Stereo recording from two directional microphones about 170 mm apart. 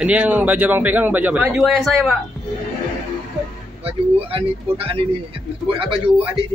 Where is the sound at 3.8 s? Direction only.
35° right (ahead or behind).